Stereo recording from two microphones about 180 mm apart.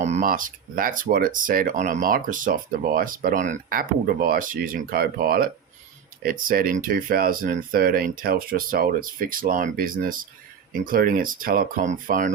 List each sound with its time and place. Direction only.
0.0 s speech: 40° right (ahead or behind)